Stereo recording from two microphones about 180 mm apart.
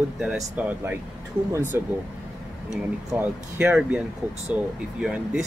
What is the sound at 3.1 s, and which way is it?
Speech, 10° right (ahead or behind).